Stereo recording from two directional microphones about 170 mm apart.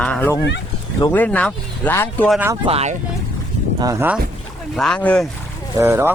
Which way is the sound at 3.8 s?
20° right (ahead or behind).